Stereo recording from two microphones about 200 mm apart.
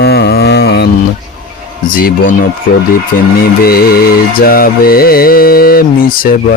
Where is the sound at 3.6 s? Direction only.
50° left (ahead or behind).